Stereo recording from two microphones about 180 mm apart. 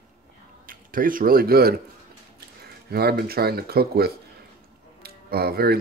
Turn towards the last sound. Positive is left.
turn(degrees=-60)  # may be behind; listen again after turning